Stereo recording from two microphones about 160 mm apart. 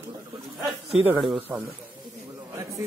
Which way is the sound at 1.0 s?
5° right (ahead or behind).